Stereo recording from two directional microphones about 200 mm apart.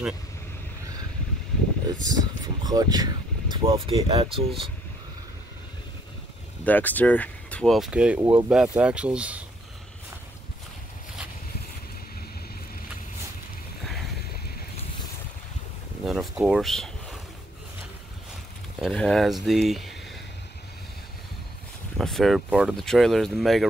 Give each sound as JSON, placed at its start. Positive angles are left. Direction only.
{"t": 1.9, "sound": "speech", "side_deg": -20}
{"t": 6.6, "sound": "speech", "side_deg": 10}
{"t": 16.1, "sound": "a sound", "side_deg": 0}
{"t": 18.8, "sound": "speech", "side_deg": 5}
{"t": 21.9, "sound": "speech", "side_deg": 0}